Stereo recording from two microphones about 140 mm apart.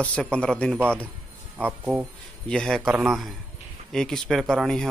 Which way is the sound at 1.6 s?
15° right (ahead or behind).